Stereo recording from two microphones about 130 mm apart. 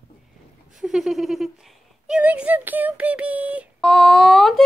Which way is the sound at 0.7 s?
5° right (ahead or behind).